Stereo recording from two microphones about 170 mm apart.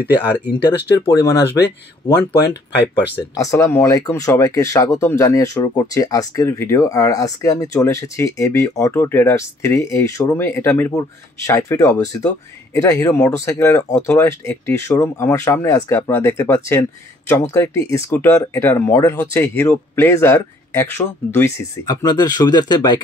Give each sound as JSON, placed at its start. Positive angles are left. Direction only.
{"t": 0.5, "sound": "speech", "side_deg": 75}
{"t": 0.9, "sound": "speech", "side_deg": 20}
{"t": 1.3, "sound": "speech", "side_deg": 90}
{"t": 2.0, "sound": "speech", "side_deg": 20}
{"t": 3.0, "sound": "speech", "side_deg": 80}
{"t": 3.3, "sound": "speech", "side_deg": 20}